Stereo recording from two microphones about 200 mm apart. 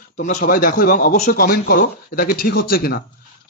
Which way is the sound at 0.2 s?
40° left (ahead or behind).